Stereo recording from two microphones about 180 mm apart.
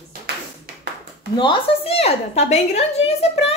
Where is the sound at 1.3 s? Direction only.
30° left (ahead or behind).